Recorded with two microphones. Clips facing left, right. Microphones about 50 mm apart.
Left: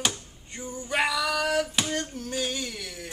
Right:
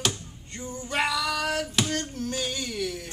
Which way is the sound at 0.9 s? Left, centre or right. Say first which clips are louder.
Left 1 dB; centre.